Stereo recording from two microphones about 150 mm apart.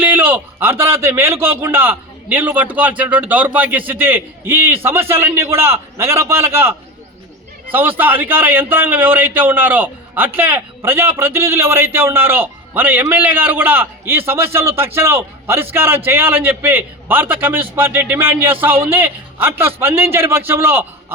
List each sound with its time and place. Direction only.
0.0 s a man's voice: 10° right (ahead or behind)